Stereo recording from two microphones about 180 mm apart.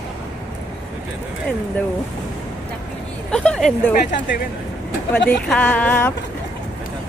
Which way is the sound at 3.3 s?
5° left (ahead or behind).